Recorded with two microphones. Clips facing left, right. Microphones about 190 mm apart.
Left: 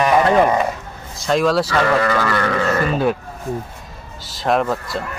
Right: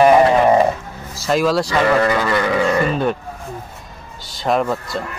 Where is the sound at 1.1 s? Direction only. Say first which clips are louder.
Even; 5° right (ahead or behind).